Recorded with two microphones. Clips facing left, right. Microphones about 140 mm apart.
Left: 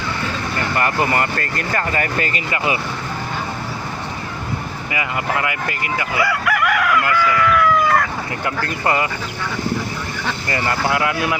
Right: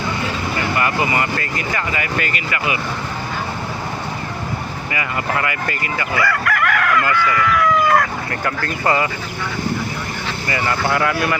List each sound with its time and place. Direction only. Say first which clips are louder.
0.9 s speech: left 1 dB; 5° right (ahead or behind)
1.2 s speech: even; 50° left (ahead or behind); by 2.7 s 30° left (ahead or behind)
4.9 s speech: left 1 dB; 15° left (ahead or behind)
8.6 s speech: right 1 dB; 25° left (ahead or behind)
10.9 s speech: right 1 dB; 15° left (ahead or behind)